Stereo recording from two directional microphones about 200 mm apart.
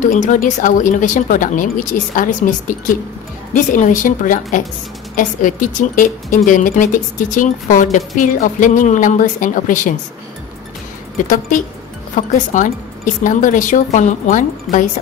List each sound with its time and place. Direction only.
0.0 s a woman's voice: 40° left (ahead or behind)
3.5 s a woman's voice: 40° left (ahead or behind)
11.2 s a woman's voice: 40° left (ahead or behind)